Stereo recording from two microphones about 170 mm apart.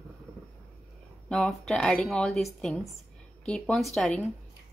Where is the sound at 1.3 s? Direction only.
5° left (ahead or behind).